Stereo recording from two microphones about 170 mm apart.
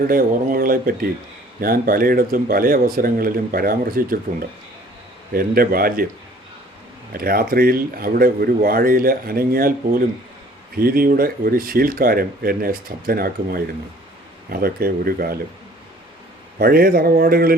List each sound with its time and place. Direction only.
0.0 s speech: 55° right (ahead or behind)
7.1 s speech: 60° right (ahead or behind)
16.6 s speech: 60° right (ahead or behind)